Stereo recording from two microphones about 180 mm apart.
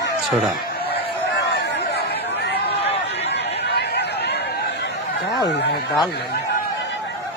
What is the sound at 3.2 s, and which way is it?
Chatter, 70° left (ahead or behind).